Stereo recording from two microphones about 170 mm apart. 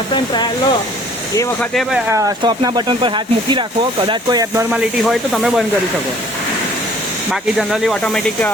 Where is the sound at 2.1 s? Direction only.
20° right (ahead or behind); by 5.7 s centre (ahead or behind).